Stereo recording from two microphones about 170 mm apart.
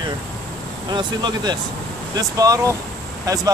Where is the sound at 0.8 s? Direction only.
25° right (ahead or behind).